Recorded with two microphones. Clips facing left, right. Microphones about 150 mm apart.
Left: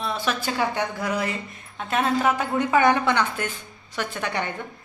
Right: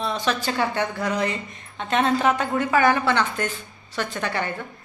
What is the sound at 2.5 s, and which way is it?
A woman's voice, 20° left (ahead or behind).